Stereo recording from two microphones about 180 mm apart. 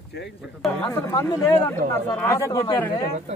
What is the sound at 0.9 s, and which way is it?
Speech, 20° left (ahead or behind).